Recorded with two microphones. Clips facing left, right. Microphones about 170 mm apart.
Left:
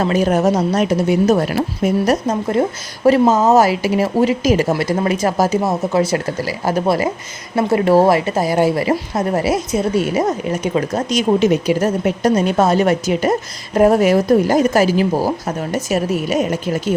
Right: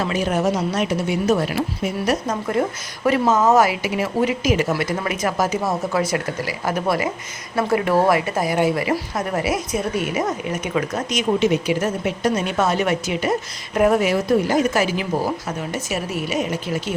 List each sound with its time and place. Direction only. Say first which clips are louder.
0.0 s speech: left 6 dB; 40° left (ahead or behind)
2.2 s speech: left 4 dB; 25° left (ahead or behind); by 16.9 s 45° left (ahead or behind)